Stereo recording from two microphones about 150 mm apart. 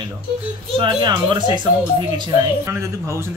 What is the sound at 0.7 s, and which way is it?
Speech, 35° right (ahead or behind).